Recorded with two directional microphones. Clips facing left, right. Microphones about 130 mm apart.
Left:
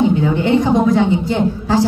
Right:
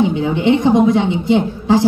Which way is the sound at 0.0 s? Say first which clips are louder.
Even; 20° right (ahead or behind).